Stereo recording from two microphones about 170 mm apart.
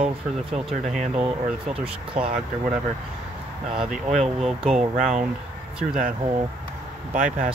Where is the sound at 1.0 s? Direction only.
5° right (ahead or behind).